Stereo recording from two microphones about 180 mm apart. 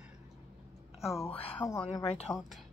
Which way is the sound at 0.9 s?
Centre (ahead or behind).